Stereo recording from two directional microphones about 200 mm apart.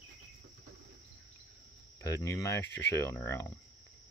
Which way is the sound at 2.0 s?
15° left (ahead or behind).